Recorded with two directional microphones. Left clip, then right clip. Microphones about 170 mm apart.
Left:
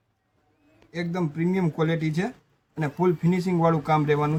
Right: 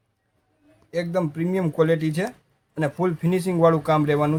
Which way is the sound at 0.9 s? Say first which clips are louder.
Right 6 dB; 60° right (ahead or behind).